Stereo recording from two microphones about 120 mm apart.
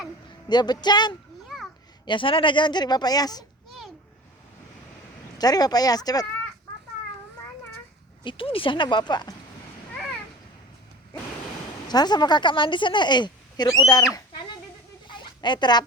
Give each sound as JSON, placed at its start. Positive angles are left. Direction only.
{"t": 0.4, "sound": "speech", "side_deg": 35}
{"t": 3.7, "sound": "a sound", "side_deg": 0}
{"t": 5.4, "sound": "speech", "side_deg": 35}
{"t": 8.2, "sound": "speech", "side_deg": 45}
{"t": 11.9, "sound": "a woman's voice", "side_deg": 35}
{"t": 15.0, "sound": "a sound", "side_deg": 40}